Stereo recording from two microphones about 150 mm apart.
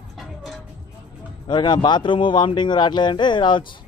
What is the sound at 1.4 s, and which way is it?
Speech, 30° left (ahead or behind).